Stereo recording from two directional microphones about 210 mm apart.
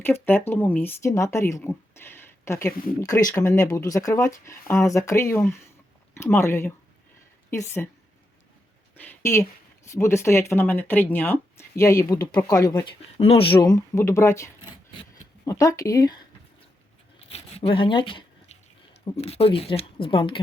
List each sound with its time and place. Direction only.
0.0 s a woman's voice: 10° left (ahead or behind)
9.0 s a woman's voice: 10° left (ahead or behind)
17.2 s a sound: 30° left (ahead or behind)
19.1 s speech: 30° left (ahead or behind)